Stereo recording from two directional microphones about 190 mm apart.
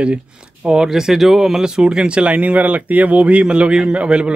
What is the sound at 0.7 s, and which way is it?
Speech, 5° right (ahead or behind).